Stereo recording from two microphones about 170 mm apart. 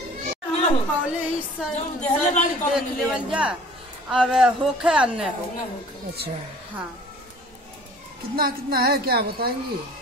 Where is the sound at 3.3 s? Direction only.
5° right (ahead or behind).